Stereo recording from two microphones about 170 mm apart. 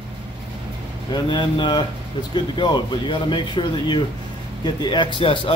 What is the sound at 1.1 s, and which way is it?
A man's voice, 25° left (ahead or behind).